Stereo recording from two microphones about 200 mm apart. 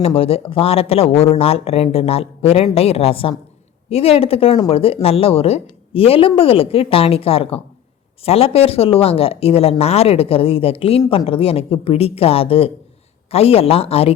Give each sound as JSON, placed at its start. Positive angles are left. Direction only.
{"t": 0.0, "sound": "speech", "side_deg": 30}